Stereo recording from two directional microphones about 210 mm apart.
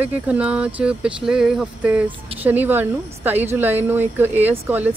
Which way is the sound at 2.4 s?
10° right (ahead or behind).